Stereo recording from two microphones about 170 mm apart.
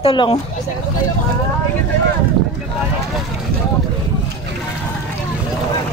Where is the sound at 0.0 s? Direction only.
30° left (ahead or behind).